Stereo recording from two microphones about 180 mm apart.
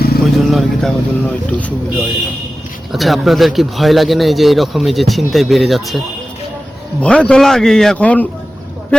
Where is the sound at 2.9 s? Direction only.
Centre (ahead or behind).